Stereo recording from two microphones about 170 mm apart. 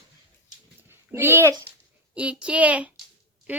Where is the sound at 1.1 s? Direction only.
15° right (ahead or behind).